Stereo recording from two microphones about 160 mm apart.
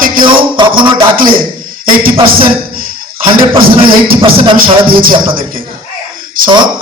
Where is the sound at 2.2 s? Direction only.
30° right (ahead or behind).